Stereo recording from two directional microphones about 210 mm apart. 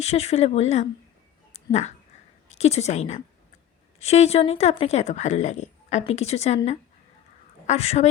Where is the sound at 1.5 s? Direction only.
30° left (ahead or behind).